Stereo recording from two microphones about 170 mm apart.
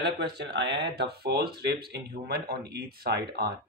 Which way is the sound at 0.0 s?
80° right.